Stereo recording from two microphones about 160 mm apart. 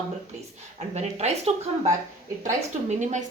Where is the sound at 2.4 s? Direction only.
50° right (ahead or behind).